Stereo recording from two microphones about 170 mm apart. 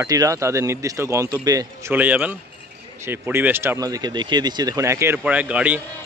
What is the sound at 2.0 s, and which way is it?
Speech, 10° right (ahead or behind).